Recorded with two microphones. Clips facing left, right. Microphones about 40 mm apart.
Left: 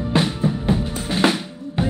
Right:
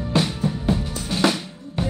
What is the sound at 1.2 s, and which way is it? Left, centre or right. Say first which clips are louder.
Drum: left 2 dB; left.